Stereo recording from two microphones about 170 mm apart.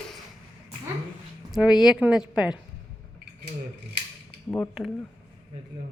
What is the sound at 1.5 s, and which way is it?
A woman's voice, 5° right (ahead or behind).